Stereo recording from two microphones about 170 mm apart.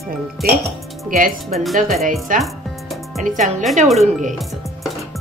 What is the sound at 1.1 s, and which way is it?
Speech, 55° right (ahead or behind).